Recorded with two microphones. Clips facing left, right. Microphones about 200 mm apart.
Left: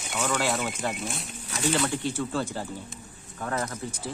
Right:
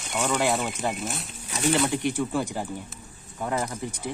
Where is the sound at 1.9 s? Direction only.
15° right (ahead or behind).